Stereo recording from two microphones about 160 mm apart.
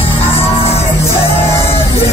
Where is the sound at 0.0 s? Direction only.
40° left (ahead or behind).